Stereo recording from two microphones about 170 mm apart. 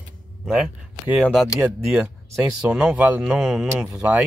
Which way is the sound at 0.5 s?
5° right (ahead or behind).